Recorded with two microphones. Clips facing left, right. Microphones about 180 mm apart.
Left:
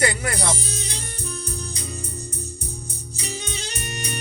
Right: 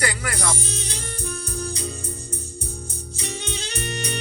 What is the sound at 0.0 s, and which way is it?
Music, 25° left (ahead or behind).